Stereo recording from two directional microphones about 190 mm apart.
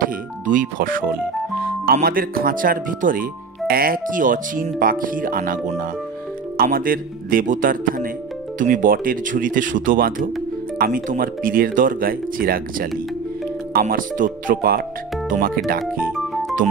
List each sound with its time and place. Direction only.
0.5 s speech: 45° right (ahead or behind)
15.8 s speech: centre (ahead or behind)